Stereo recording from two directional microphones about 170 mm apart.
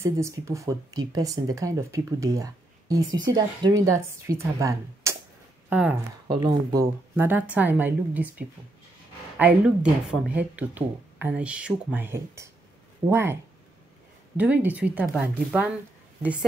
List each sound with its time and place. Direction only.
0.0 s speech: 15° right (ahead or behind)
6.2 s speech: 25° right (ahead or behind)
10.0 s speech: 5° right (ahead or behind)